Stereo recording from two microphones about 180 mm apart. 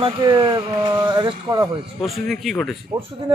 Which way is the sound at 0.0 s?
25° right (ahead or behind).